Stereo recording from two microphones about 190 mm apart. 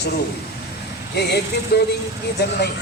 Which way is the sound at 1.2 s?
60° left (ahead or behind).